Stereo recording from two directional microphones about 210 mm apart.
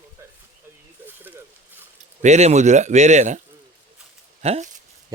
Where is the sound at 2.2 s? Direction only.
30° right (ahead or behind).